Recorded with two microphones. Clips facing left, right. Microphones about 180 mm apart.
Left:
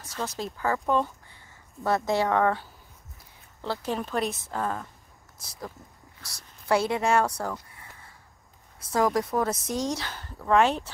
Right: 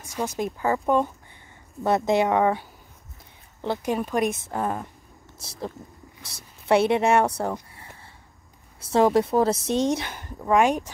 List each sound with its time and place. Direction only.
0.0 s speech: 15° right (ahead or behind)
3.6 s speech: 15° right (ahead or behind)
6.7 s a woman's voice: 25° right (ahead or behind)